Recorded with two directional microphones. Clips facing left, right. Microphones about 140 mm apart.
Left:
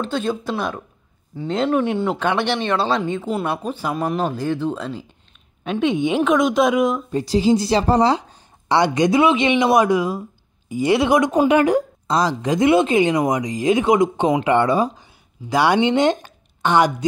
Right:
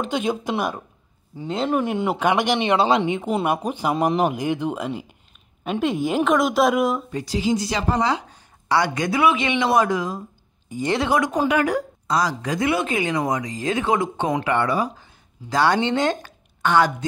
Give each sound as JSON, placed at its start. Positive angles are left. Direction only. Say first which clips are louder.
{"t": 0.0, "sound": "a woman's voice", "louder": "left 1 dB", "side_deg": -15}
{"t": 7.1, "sound": "speech", "louder": "left 6 dB", "side_deg": 30}
{"t": 15.5, "sound": "speech", "louder": "left 3 dB", "side_deg": 15}